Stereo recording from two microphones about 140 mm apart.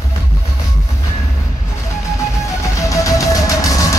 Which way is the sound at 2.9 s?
25° left (ahead or behind).